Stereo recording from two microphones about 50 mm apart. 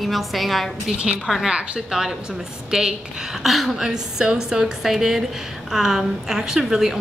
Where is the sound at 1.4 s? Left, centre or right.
Centre.